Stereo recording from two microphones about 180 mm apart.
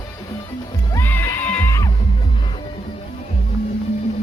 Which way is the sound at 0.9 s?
10° left (ahead or behind).